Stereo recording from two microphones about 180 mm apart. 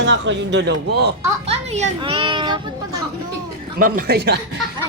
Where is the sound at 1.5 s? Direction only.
35° right (ahead or behind).